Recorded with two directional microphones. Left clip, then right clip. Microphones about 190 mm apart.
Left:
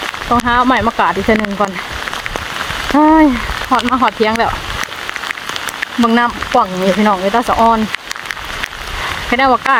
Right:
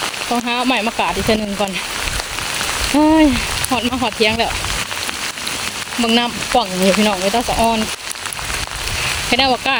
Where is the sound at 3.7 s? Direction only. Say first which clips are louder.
Left 10 dB; 15° left (ahead or behind).